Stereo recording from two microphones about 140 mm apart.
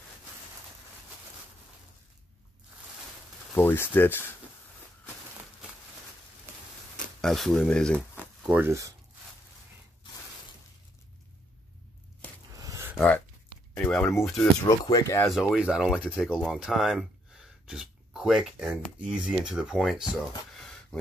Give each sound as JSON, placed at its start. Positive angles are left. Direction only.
{"t": 3.5, "sound": "speech", "side_deg": 15}
{"t": 7.2, "sound": "speech", "side_deg": 5}
{"t": 8.5, "sound": "speech", "side_deg": -15}
{"t": 12.5, "sound": "a sound", "side_deg": -20}
{"t": 12.9, "sound": "speech", "side_deg": 10}
{"t": 13.7, "sound": "a sound", "side_deg": 10}
{"t": 14.4, "sound": "speech", "side_deg": 20}
{"t": 15.2, "sound": "speech", "side_deg": 0}